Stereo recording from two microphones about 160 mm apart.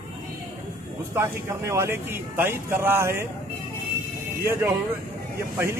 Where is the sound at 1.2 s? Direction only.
15° right (ahead or behind).